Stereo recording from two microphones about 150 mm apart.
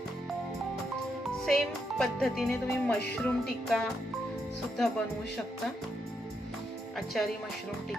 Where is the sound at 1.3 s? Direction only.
Centre (ahead or behind).